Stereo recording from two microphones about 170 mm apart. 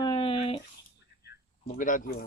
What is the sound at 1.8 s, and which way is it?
Speech, 50° left (ahead or behind).